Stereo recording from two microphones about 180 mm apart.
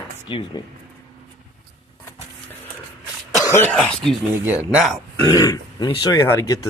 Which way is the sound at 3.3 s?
15° left (ahead or behind).